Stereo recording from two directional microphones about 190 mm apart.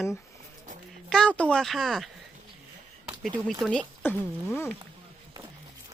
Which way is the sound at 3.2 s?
Centre (ahead or behind).